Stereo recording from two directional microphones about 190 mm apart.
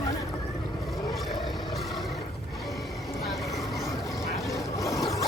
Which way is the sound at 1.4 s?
Centre (ahead or behind).